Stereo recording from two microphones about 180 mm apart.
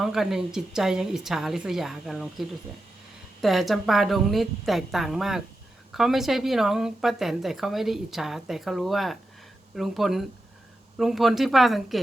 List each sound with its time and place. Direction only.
0.0 s a woman's voice: centre (ahead or behind)